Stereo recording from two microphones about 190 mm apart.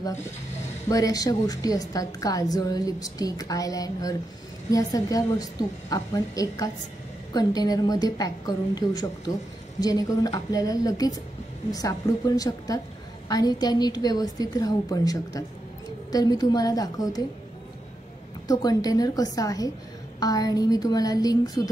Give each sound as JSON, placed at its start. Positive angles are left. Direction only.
{"t": 0.8, "sound": "a woman's voice", "side_deg": 20}
{"t": 18.5, "sound": "a woman's voice", "side_deg": 20}